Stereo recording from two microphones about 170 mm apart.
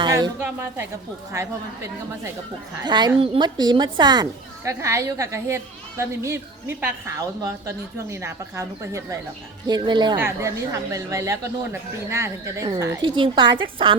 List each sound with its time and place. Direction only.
0.0 s a sound: 25° right (ahead or behind)
0.3 s a woman's voice: 10° right (ahead or behind)
10.2 s speech: 15° right (ahead or behind)
13.0 s a woman's voice: 30° right (ahead or behind)